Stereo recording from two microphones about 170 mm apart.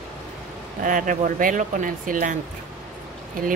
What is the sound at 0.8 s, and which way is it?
A woman's voice, 50° right (ahead or behind).